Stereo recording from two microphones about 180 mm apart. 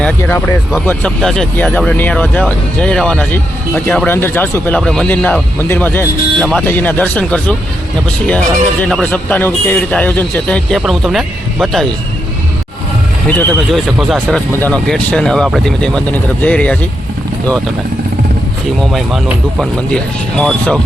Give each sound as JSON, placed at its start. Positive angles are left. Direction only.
{"t": 0.0, "sound": "speech", "side_deg": 10}
{"t": 13.7, "sound": "speech", "side_deg": 0}
{"t": 18.9, "sound": "speech", "side_deg": 0}